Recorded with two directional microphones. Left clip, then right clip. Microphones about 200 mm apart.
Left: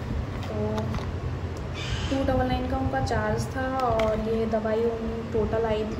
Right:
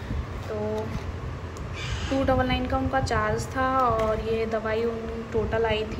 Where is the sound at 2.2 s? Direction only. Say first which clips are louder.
Right 2 dB; 5° left (ahead or behind).